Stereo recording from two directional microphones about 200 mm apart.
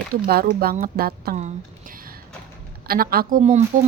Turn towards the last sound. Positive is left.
turn(degrees=-40)  # may be behind; listen again after turning